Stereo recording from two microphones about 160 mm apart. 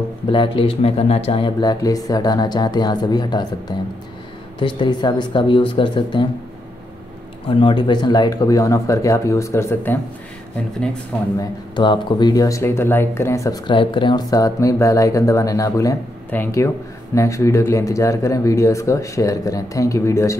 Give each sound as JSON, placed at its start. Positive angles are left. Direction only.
{"t": 0.3, "sound": "speech", "side_deg": 30}
{"t": 7.4, "sound": "speech", "side_deg": 35}
{"t": 11.3, "sound": "speech", "side_deg": 30}
{"t": 13.7, "sound": "speech", "side_deg": 30}